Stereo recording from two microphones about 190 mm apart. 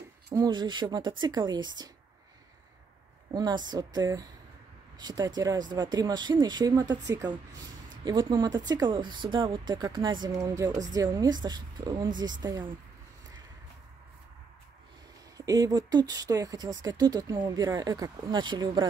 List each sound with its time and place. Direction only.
0.3 s speech: 20° right (ahead or behind)
3.3 s speech: 20° right (ahead or behind)
15.3 s speech: 20° right (ahead or behind)